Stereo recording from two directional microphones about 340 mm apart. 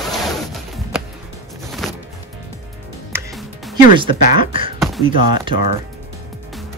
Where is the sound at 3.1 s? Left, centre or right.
Centre.